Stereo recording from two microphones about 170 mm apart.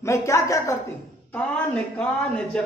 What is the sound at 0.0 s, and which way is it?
Speech, 15° left (ahead or behind).